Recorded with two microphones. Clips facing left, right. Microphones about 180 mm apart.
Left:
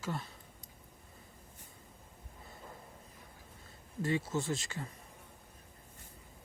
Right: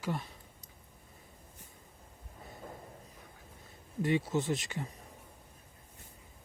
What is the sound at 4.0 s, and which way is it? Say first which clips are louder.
Speech: right 3 dB; 20° right (ahead or behind).